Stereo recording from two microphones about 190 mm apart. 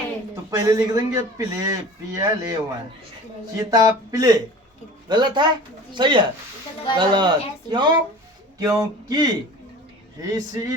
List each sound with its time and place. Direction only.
0.5 s a man's voice: 15° right (ahead or behind)
3.6 s speech: 20° right (ahead or behind)